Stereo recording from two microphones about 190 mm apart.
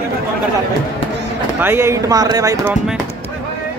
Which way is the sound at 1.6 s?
15° right (ahead or behind).